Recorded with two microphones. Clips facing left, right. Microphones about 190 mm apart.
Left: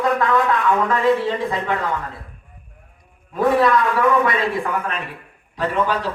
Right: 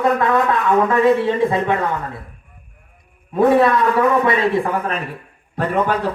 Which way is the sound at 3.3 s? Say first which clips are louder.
Right 3 dB; 25° right (ahead or behind).